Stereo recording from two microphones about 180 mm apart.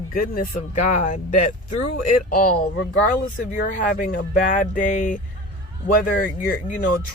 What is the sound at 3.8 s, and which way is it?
Speech, 50° left (ahead or behind).